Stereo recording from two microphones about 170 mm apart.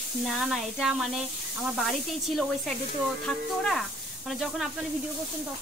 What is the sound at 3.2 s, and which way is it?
Speech, 5° left (ahead or behind).